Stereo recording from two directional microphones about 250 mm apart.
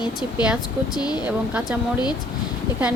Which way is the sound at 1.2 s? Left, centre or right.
Centre.